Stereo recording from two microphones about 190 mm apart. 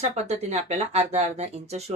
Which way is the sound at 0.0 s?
35° right (ahead or behind).